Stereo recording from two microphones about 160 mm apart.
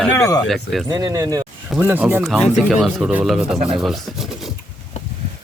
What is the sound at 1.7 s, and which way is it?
Speech, 10° right (ahead or behind).